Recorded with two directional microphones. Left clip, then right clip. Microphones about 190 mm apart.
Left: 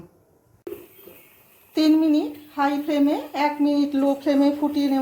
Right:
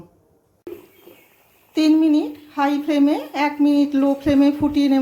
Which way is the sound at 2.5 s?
20° right (ahead or behind).